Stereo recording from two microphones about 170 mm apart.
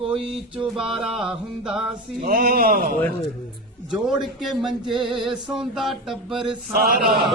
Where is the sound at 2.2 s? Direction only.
60° right (ahead or behind).